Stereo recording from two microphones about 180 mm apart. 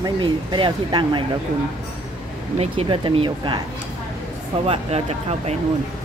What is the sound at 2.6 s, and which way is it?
Speech, 30° right (ahead or behind).